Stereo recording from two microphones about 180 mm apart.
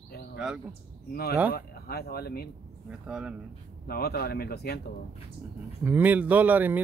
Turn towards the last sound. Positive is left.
turn(degrees=-10)  # may be behind; listen again after turning